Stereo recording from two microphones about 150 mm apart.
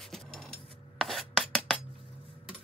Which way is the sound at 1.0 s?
Centre (ahead or behind).